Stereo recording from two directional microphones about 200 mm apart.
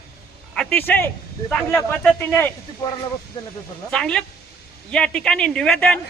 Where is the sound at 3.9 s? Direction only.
5° left (ahead or behind).